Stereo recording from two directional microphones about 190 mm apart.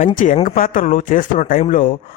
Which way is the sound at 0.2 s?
45° left (ahead or behind).